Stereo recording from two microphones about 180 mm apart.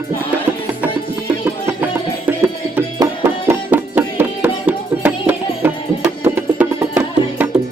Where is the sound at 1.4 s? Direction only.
10° right (ahead or behind).